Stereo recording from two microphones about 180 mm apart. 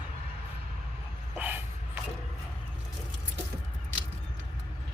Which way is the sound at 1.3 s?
10° right (ahead or behind).